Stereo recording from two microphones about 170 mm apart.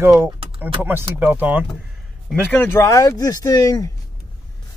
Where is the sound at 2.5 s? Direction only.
10° left (ahead or behind).